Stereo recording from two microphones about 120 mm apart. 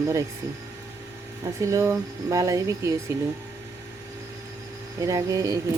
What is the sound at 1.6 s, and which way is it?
Speech, 25° right (ahead or behind).